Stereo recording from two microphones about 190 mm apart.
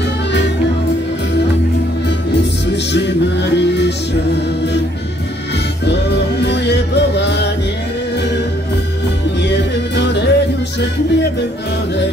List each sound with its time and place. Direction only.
2.0 s music: 65° left (ahead or behind)
5.9 s music: 60° left (ahead or behind)
9.4 s music: 65° left (ahead or behind)